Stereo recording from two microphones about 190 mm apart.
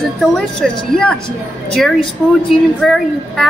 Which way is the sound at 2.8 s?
Centre (ahead or behind).